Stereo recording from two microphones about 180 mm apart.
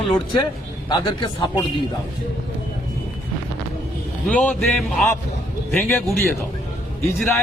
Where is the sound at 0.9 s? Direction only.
25° left (ahead or behind).